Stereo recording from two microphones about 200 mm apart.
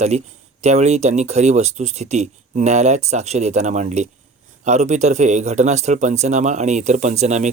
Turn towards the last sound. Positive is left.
turn(degrees=-35)  # may be behind; listen again after turning